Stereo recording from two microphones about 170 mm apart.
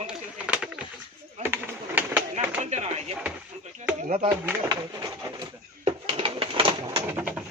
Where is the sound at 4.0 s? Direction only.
45° right (ahead or behind).